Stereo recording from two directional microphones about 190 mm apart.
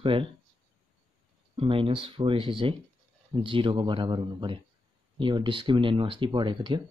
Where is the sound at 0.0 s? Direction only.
25° right (ahead or behind).